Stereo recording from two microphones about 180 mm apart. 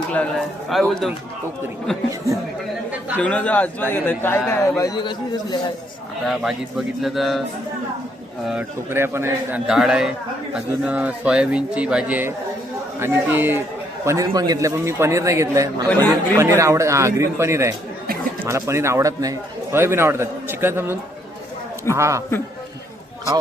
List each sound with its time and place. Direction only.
0.1 s a man's voice: 5° left (ahead or behind)
3.2 s a man's voice: 5° left (ahead or behind); by 5.5 s 25° left (ahead or behind)
6.2 s a man's voice: centre (ahead or behind)
8.4 s a man's voice: 10° right (ahead or behind)
9.6 s a man's voice: centre (ahead or behind); by 15.9 s 15° right (ahead or behind)
15.9 s a man's voice: 10° left (ahead or behind)
16.4 s a man's voice: 15° right (ahead or behind)